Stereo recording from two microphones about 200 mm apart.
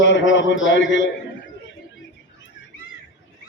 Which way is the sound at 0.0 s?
65° left (ahead or behind).